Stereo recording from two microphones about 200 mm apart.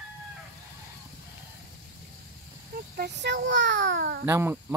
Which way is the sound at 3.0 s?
60° right (ahead or behind).